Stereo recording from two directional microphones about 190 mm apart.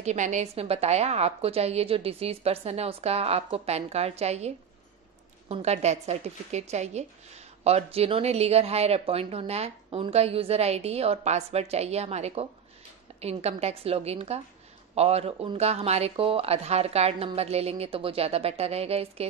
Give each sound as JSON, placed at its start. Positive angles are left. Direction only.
{"t": 0.0, "sound": "a woman's voice", "side_deg": -40}
{"t": 5.5, "sound": "a woman's voice", "side_deg": -35}